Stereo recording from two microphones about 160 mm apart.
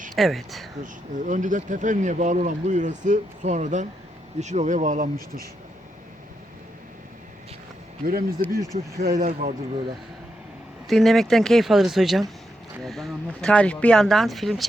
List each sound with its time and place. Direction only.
0.2 s speech: centre (ahead or behind)
1.1 s speech: 50° right (ahead or behind)
8.0 s speech: 65° right (ahead or behind)
10.8 s speech: centre (ahead or behind)